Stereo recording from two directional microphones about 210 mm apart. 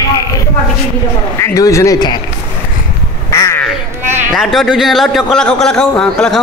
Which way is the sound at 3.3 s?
15° left (ahead or behind).